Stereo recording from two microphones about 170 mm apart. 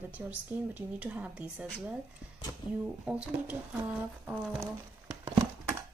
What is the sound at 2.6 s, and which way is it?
Speech, 25° left (ahead or behind).